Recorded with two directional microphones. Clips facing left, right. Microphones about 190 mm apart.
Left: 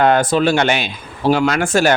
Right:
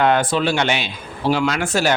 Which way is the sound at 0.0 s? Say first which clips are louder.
Left 3 dB; 40° left (ahead or behind).